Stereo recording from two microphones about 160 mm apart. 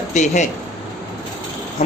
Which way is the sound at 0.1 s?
50° left (ahead or behind).